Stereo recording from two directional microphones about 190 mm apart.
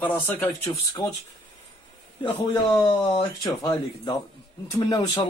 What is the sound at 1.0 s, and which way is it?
Speech, 25° left (ahead or behind).